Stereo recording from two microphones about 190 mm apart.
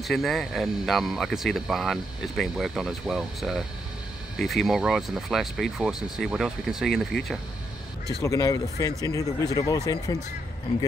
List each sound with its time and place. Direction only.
0.0 s speech: centre (ahead or behind)
8.2 s speech: 15° left (ahead or behind)